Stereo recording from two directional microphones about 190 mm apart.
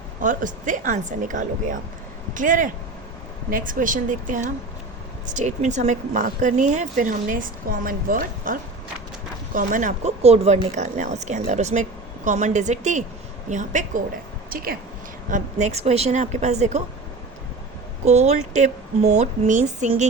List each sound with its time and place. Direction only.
0.2 s speech: 45° right (ahead or behind)
9.6 s speech: 45° right (ahead or behind)
18.0 s speech: 35° right (ahead or behind)